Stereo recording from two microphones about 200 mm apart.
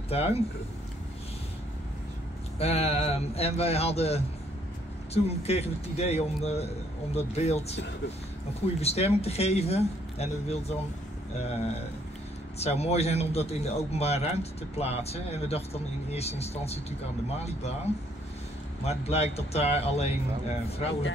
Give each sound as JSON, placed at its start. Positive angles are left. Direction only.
{"t": 0.1, "sound": "a man's voice", "side_deg": 30}
{"t": 2.6, "sound": "a man's voice", "side_deg": 30}
{"t": 18.9, "sound": "a man's voice", "side_deg": 30}